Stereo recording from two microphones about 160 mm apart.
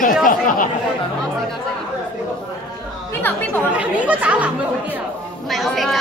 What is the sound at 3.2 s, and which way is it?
Speech, 15° left (ahead or behind).